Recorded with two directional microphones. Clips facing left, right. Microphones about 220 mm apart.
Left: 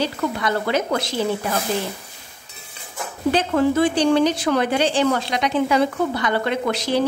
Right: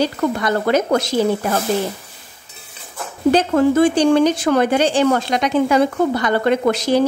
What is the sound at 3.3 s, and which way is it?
A woman's voice, 45° right (ahead or behind).